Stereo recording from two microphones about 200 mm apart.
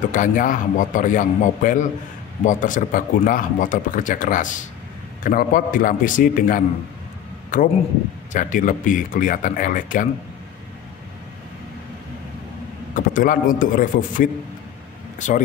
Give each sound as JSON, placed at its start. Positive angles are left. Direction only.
{"t": 0.1, "sound": "a man's voice", "side_deg": 40}
{"t": 12.9, "sound": "a man's voice", "side_deg": 45}